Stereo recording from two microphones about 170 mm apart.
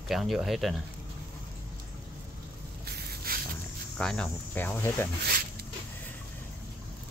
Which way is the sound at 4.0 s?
5° left (ahead or behind).